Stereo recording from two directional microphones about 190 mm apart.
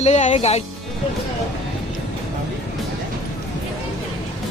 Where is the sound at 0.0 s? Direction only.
35° left (ahead or behind).